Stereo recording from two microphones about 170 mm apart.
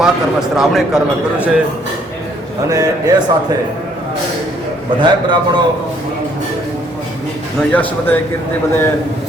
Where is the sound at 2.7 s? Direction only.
20° right (ahead or behind).